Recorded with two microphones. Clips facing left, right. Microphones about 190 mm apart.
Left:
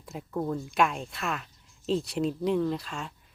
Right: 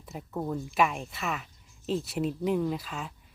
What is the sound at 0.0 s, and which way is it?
Speech, centre (ahead or behind).